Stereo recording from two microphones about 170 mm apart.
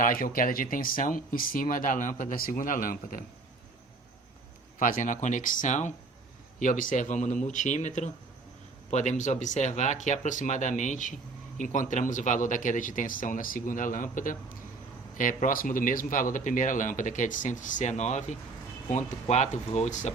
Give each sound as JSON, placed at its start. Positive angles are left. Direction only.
{"t": 0.0, "sound": "speech", "side_deg": 55}
{"t": 4.8, "sound": "speech", "side_deg": 50}